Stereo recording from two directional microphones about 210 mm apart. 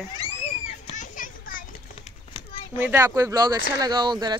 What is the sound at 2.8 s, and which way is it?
Speech, 10° right (ahead or behind).